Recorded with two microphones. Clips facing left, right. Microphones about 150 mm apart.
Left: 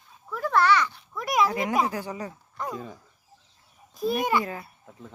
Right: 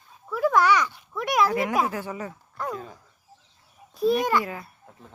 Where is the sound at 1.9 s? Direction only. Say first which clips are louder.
Right 1 dB; 35° left (ahead or behind).